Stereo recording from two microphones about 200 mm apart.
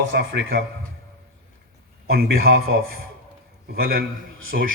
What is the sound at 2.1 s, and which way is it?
A man's voice, 50° right (ahead or behind).